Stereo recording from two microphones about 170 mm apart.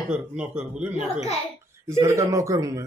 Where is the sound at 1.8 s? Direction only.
15° right (ahead or behind).